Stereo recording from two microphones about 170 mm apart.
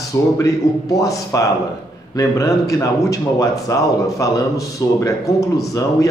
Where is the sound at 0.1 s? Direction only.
15° left (ahead or behind).